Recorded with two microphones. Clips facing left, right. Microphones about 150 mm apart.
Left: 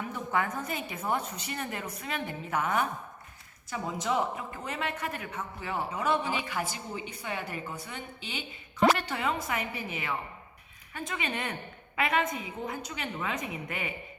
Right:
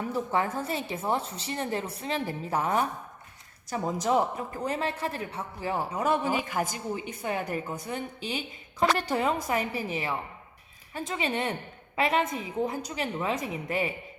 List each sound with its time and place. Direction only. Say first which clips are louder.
0.1 s a woman's voice: right 3 dB; 30° right (ahead or behind)